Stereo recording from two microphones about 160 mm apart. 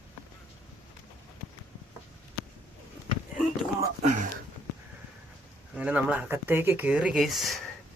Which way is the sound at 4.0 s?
50° right (ahead or behind).